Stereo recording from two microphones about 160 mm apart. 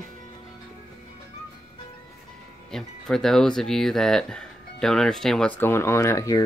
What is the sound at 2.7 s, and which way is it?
Speech, 5° left (ahead or behind).